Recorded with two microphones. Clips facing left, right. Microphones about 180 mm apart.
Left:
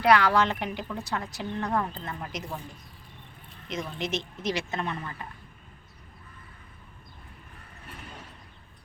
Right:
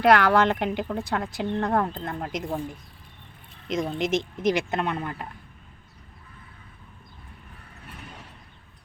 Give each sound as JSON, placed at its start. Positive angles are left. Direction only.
{"t": 0.0, "sound": "speech", "side_deg": -55}
{"t": 3.7, "sound": "speech", "side_deg": -50}